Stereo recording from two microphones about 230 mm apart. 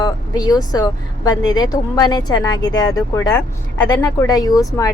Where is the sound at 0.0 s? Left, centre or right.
Centre.